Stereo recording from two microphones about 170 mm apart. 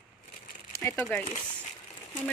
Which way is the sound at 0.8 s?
10° left (ahead or behind).